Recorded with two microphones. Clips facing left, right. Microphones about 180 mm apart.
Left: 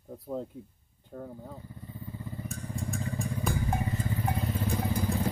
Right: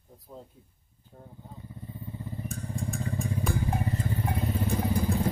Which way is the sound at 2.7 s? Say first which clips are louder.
Right 1 dB; 5° right (ahead or behind).